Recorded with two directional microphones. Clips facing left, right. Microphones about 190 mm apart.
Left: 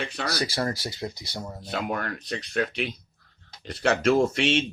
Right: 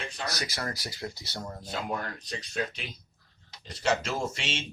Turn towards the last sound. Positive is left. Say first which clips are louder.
# left 11 dB
turn(degrees=60)  # may be behind; listen again after turning